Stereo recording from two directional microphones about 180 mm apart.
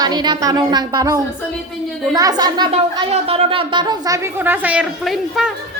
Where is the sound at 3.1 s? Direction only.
35° right (ahead or behind); by 5.5 s centre (ahead or behind).